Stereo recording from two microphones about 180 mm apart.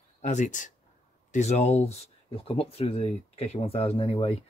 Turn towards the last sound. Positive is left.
turn(degrees=30)  # may be behind; listen again after turning